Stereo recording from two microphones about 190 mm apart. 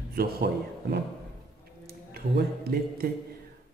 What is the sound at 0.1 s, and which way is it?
A man's voice, 55° right (ahead or behind).